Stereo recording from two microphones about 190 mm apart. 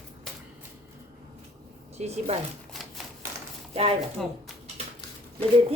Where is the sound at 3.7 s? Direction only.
35° right (ahead or behind).